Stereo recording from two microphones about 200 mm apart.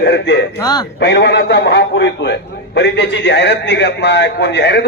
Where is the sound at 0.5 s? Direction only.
20° left (ahead or behind).